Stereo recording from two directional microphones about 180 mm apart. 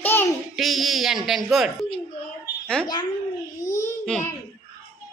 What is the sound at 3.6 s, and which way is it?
Babbling, 15° left (ahead or behind).